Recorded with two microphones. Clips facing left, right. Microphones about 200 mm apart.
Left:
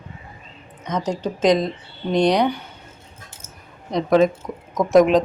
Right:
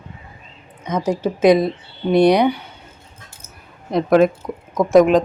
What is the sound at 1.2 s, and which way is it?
Speech, 10° right (ahead or behind).